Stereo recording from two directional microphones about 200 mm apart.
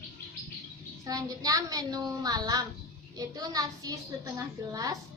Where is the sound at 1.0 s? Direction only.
15° right (ahead or behind).